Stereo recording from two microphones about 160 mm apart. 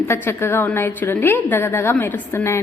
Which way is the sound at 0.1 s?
15° left (ahead or behind).